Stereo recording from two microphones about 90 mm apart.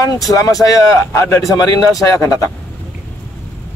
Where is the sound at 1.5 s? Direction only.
40° left (ahead or behind).